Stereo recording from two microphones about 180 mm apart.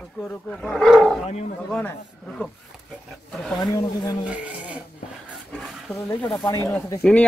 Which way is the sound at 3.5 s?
20° left (ahead or behind).